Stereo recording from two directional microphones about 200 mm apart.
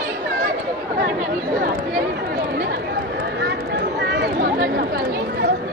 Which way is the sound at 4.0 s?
55° right (ahead or behind).